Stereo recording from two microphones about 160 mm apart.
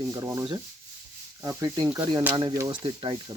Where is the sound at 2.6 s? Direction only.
30° right (ahead or behind).